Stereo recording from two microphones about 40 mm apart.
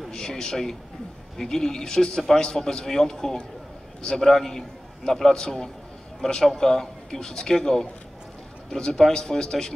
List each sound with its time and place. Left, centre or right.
0.1 s a man's voice: centre